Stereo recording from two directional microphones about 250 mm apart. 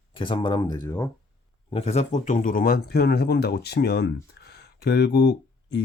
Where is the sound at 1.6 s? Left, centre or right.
Left.